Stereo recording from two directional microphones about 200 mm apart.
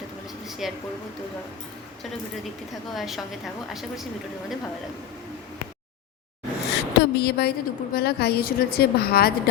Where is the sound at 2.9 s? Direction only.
Centre (ahead or behind).